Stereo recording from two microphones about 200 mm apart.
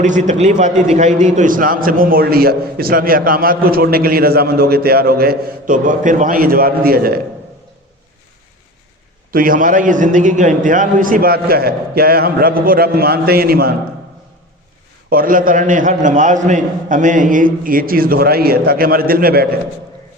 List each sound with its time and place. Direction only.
0.0 s a man's voice: 40° right (ahead or behind)
9.3 s a man's voice: 45° right (ahead or behind)
15.1 s a man's voice: 45° right (ahead or behind)